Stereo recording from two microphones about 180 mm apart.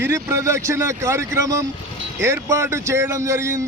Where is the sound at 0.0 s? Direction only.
15° right (ahead or behind).